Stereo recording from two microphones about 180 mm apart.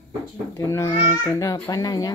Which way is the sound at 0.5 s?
15° left (ahead or behind).